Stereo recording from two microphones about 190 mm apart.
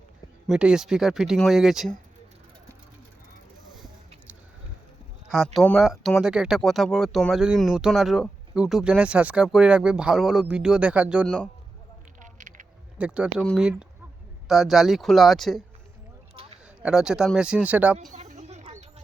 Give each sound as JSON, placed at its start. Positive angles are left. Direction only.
{"t": 0.4, "sound": "speech", "side_deg": -5}
{"t": 5.5, "sound": "speech", "side_deg": 0}
{"t": 12.2, "sound": "a sound", "side_deg": -40}
{"t": 13.0, "sound": "speech", "side_deg": -5}
{"t": 16.8, "sound": "speech", "side_deg": -5}
{"t": 18.1, "sound": "a sound", "side_deg": -40}